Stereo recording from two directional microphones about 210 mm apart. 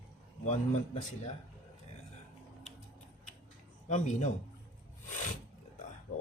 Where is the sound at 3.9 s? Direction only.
35° left (ahead or behind).